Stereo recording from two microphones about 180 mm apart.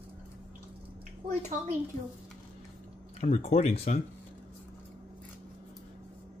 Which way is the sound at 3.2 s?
40° left (ahead or behind).